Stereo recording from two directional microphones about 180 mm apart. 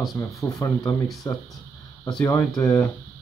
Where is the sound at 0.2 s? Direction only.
15° left (ahead or behind).